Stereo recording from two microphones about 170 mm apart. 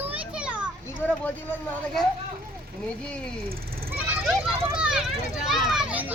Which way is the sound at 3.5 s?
60° right (ahead or behind).